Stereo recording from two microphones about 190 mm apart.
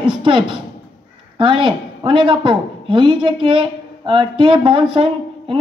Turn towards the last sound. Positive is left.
turn(degrees=-30)  # may be behind; listen again after turning